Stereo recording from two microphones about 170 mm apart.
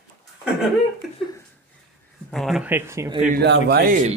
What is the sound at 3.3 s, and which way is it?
Speech, 80° right.